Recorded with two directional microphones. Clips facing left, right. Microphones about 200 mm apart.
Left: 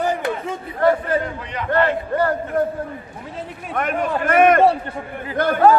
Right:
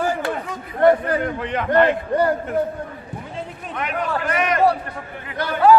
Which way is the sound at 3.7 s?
50° left (ahead or behind).